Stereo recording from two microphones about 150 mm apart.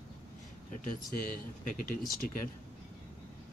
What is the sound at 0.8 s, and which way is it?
Speech, 65° left (ahead or behind).